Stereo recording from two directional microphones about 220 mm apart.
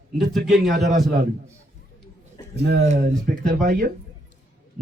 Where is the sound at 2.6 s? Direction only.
50° right (ahead or behind).